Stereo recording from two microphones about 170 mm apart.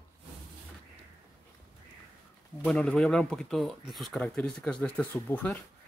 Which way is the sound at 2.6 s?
5° left (ahead or behind).